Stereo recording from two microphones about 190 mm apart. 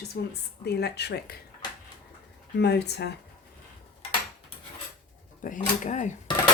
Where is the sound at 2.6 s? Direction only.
60° left (ahead or behind).